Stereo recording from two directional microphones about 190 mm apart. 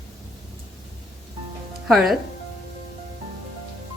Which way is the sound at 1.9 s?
Centre (ahead or behind).